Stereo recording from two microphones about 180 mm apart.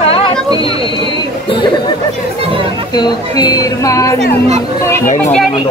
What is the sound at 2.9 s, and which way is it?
A woman's voice, 25° left (ahead or behind).